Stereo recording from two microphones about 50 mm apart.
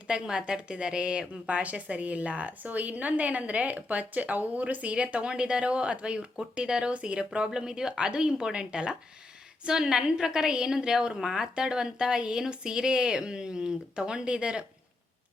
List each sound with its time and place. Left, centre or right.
0.1 s a woman's voice: centre